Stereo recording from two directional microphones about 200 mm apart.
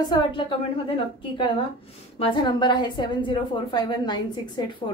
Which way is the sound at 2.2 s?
25° left (ahead or behind).